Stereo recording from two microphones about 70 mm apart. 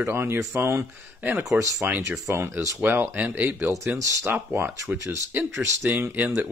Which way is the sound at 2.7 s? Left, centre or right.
Right.